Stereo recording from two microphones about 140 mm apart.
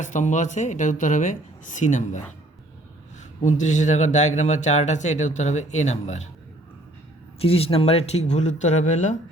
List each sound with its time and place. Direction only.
0.0 s speech: 60° left (ahead or behind)
3.4 s speech: 60° left (ahead or behind)
7.3 s speech: 45° left (ahead or behind); by 9.1 s 60° left (ahead or behind)